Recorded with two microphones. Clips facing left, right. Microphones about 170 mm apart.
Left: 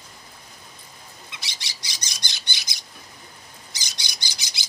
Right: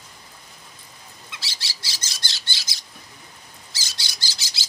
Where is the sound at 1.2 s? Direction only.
20° left (ahead or behind).